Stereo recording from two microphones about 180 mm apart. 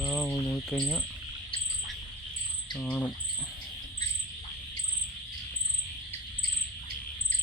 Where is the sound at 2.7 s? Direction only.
5° left (ahead or behind).